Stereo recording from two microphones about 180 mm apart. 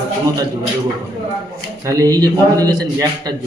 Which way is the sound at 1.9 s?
20° right (ahead or behind).